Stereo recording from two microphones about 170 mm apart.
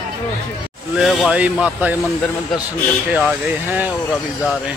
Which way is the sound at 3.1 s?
10° right (ahead or behind).